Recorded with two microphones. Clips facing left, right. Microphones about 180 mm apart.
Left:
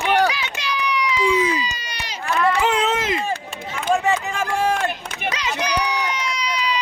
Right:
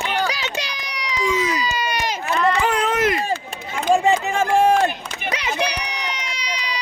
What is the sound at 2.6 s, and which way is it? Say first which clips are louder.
Speech: left 1 dB; 20° left (ahead or behind).